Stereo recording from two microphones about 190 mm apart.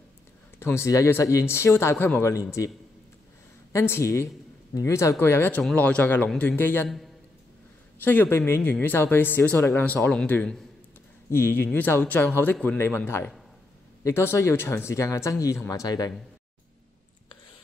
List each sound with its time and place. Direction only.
0.6 s speech: 15° left (ahead or behind)
3.7 s speech: 15° left (ahead or behind)
8.0 s speech: 10° left (ahead or behind)
11.2 s speech: 50° left (ahead or behind)
11.7 s speech: 10° left (ahead or behind)